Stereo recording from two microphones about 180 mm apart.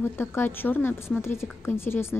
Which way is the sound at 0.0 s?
15° left (ahead or behind).